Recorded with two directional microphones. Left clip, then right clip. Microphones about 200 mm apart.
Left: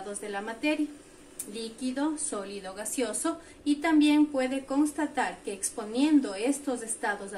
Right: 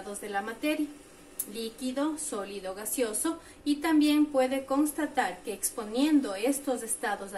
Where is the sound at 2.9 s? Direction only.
10° left (ahead or behind).